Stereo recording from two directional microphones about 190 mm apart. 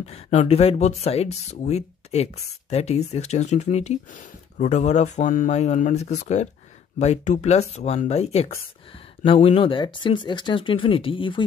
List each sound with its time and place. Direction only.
0.0 s speech: 35° left (ahead or behind)